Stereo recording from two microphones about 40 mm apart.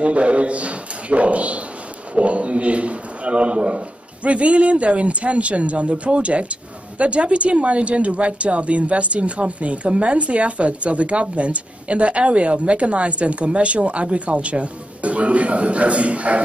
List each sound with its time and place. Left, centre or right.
0.0 s speech: right